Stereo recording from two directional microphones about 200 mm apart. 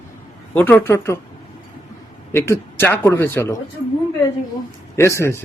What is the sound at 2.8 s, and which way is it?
Speech, 10° left (ahead or behind).